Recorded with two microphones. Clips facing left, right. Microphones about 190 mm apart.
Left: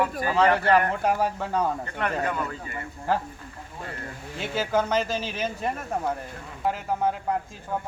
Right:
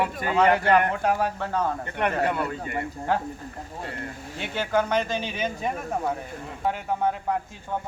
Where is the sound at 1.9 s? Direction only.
15° right (ahead or behind).